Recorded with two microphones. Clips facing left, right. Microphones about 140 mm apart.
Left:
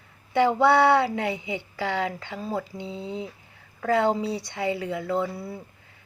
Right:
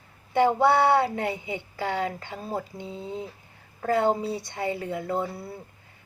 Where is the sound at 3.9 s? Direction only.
50° right (ahead or behind).